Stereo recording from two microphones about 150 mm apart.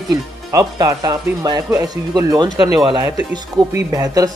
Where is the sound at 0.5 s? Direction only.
25° right (ahead or behind).